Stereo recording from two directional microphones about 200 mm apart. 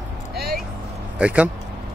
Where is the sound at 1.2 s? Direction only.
5° right (ahead or behind).